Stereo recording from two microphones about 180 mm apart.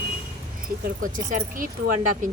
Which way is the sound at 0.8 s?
50° right (ahead or behind).